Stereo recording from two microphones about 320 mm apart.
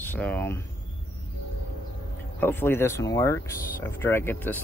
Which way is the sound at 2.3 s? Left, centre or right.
Centre.